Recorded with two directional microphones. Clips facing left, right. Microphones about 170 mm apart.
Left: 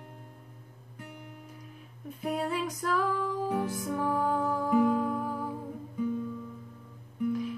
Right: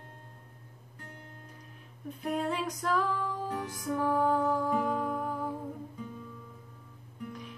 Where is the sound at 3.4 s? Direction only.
10° left (ahead or behind).